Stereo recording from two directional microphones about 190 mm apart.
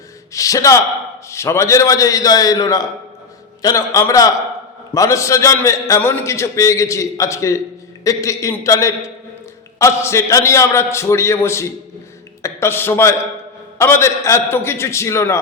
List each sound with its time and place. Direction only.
0.3 s a man's voice: 15° left (ahead or behind)